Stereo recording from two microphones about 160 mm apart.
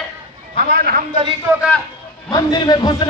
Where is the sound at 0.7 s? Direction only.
75° right (ahead or behind).